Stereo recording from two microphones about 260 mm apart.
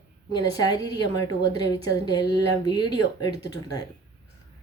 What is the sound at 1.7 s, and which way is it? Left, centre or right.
Speech, centre.